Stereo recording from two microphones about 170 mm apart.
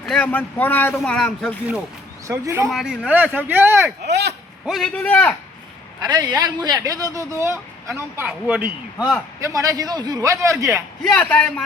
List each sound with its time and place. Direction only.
0.0 s speech: 5° left (ahead or behind)
2.2 s speech: 15° right (ahead or behind)
2.6 s speech: centre (ahead or behind)
4.0 s speech: 80° right
4.6 s speech: centre (ahead or behind)
6.0 s speech: 25° right (ahead or behind); by 9.1 s 5° right (ahead or behind)
9.4 s speech: 20° right (ahead or behind)
11.0 s speech: 5° left (ahead or behind)